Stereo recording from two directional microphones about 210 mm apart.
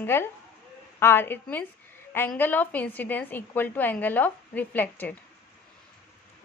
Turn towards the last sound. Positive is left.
turn(degrees=10)  # may be behind; listen again after turning